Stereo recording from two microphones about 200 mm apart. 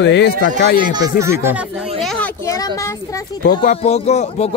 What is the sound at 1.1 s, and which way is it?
Speech, 15° right (ahead or behind).